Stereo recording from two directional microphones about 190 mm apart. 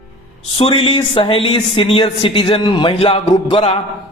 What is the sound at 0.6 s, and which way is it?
A woman's voice, 25° left (ahead or behind).